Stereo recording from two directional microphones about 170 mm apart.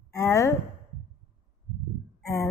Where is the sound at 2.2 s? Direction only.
20° left (ahead or behind).